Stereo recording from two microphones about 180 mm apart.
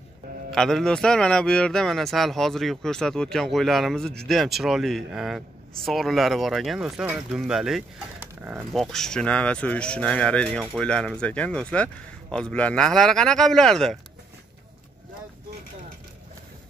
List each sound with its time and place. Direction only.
0.5 s speech: centre (ahead or behind)
8.7 s speech: centre (ahead or behind)